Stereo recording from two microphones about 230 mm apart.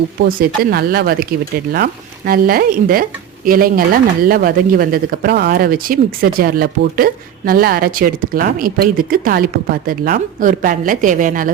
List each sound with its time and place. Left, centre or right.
0.2 s speech: right